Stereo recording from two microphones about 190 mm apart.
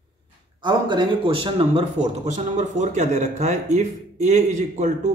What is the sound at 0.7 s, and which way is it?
Speech, 25° right (ahead or behind).